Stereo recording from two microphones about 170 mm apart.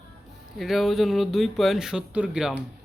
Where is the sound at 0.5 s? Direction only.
Centre (ahead or behind).